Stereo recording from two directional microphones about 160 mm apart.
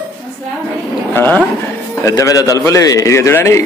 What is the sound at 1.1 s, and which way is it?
A man's voice, 10° left (ahead or behind).